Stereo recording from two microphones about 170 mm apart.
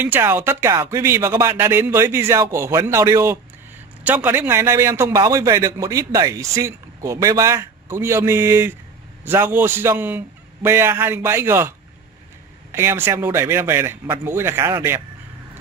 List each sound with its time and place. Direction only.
0.0 s a man's voice: 10° right (ahead or behind)
12.7 s a man's voice: 15° right (ahead or behind)